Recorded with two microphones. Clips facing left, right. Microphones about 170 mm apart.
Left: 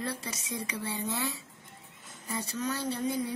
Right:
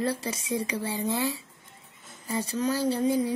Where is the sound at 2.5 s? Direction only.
30° right (ahead or behind).